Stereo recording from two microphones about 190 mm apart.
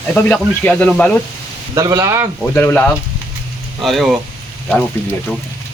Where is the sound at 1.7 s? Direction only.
15° right (ahead or behind).